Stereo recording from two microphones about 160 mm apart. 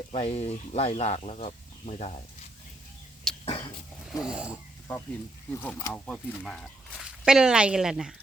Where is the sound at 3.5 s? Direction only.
35° left (ahead or behind).